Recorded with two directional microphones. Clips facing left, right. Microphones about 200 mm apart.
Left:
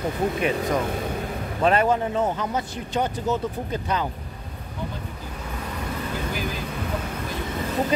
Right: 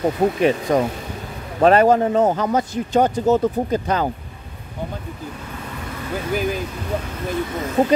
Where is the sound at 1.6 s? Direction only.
40° right (ahead or behind).